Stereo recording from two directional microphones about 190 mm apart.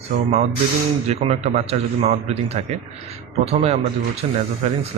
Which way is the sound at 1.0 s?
35° right (ahead or behind).